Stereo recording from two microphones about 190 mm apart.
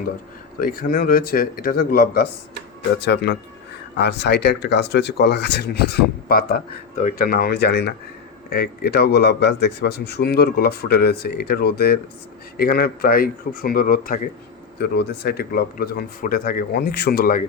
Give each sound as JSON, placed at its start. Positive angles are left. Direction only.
{"t": 0.6, "sound": "speech", "side_deg": 50}
{"t": 3.0, "sound": "a man's voice", "side_deg": 65}
{"t": 14.8, "sound": "speech", "side_deg": 60}